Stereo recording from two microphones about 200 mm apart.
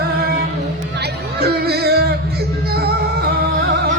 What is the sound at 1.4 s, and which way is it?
Music, 50° right (ahead or behind).